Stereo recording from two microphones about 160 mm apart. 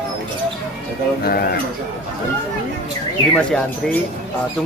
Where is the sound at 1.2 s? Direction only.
75° left (ahead or behind).